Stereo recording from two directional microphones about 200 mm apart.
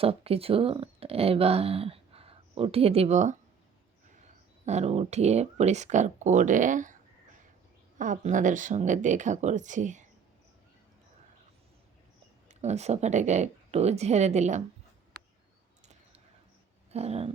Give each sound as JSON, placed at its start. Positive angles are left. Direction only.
{"t": 0.0, "sound": "speech", "side_deg": -30}
{"t": 4.6, "sound": "speech", "side_deg": -35}
{"t": 7.9, "sound": "speech", "side_deg": -40}
{"t": 12.5, "sound": "speech", "side_deg": -35}
{"t": 16.9, "sound": "speech", "side_deg": -30}